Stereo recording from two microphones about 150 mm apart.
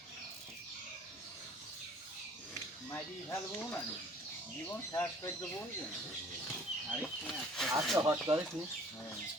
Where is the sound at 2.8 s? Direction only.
20° left (ahead or behind).